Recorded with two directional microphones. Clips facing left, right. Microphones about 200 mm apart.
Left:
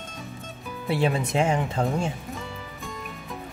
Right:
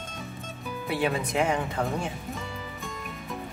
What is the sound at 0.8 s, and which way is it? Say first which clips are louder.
Speech: left 3 dB; 25° left (ahead or behind).